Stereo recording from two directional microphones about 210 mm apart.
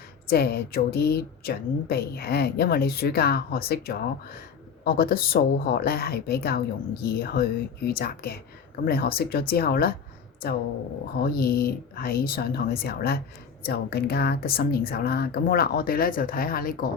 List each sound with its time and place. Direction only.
0.3 s a woman's voice: 45° left (ahead or behind)